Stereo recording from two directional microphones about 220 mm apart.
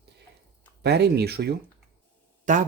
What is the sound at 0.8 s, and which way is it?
Speech, 50° right (ahead or behind).